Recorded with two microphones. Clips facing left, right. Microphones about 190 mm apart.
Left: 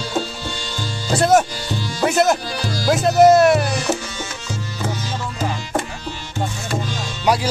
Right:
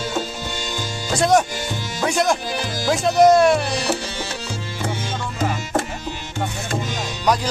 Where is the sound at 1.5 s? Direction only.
20° right (ahead or behind).